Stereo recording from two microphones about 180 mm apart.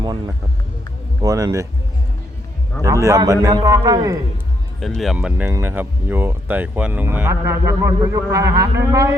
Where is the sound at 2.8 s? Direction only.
15° right (ahead or behind).